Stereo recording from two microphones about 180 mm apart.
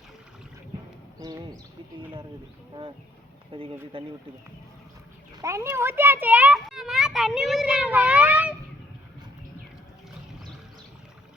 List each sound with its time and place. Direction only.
1.2 s a sound: 20° right (ahead or behind)
3.5 s speech: 30° right (ahead or behind)
5.4 s a child's voice: 15° right (ahead or behind)